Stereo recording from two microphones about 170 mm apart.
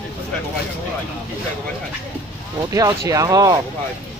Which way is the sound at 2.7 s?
20° right (ahead or behind).